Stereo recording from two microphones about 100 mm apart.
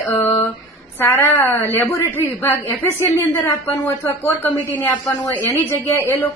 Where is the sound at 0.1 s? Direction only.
25° left (ahead or behind).